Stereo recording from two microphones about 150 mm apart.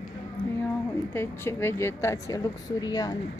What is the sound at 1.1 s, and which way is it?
A woman's voice, 15° left (ahead or behind).